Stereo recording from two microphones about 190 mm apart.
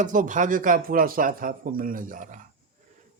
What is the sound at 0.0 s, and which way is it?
A man's voice, 45° right (ahead or behind).